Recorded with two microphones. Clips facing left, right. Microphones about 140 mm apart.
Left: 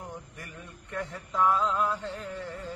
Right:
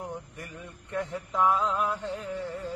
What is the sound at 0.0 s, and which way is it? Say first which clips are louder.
Mantra: right 4 dB; 20° right (ahead or behind).